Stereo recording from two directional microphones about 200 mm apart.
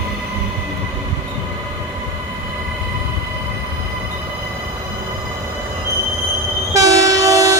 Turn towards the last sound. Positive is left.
turn(degrees=-15)  # may be behind; listen again after turning